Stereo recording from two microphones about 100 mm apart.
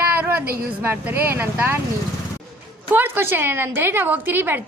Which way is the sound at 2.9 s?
20° right (ahead or behind).